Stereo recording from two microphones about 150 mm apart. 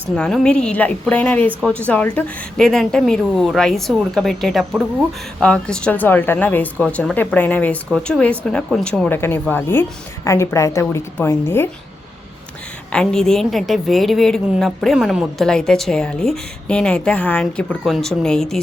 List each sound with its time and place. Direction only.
0.2 s a woman's voice: 5° left (ahead or behind)
12.9 s a woman's voice: 5° left (ahead or behind)